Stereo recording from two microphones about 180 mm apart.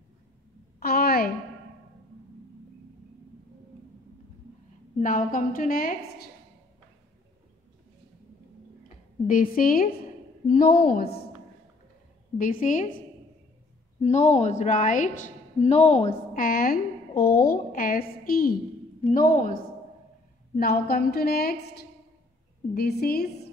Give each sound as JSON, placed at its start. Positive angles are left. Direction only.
{"t": 0.7, "sound": "a sound", "side_deg": 60}
{"t": 5.0, "sound": "a woman's voice", "side_deg": 50}
{"t": 8.8, "sound": "a sound", "side_deg": 50}
{"t": 10.4, "sound": "a woman's voice", "side_deg": 45}
{"t": 12.4, "sound": "a woman's voice", "side_deg": 50}
{"t": 14.0, "sound": "a woman's voice", "side_deg": 40}
{"t": 20.5, "sound": "a woman's voice", "side_deg": 60}